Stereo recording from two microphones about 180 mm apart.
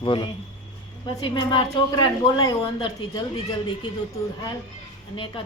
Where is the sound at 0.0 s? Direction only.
25° left (ahead or behind).